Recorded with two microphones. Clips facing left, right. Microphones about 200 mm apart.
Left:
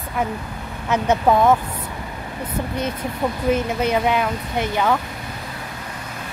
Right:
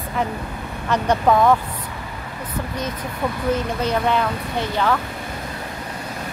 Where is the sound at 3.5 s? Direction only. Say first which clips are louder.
Left 2 dB; 10° left (ahead or behind).